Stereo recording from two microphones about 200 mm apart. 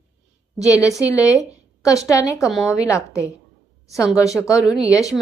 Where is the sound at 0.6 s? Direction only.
15° left (ahead or behind).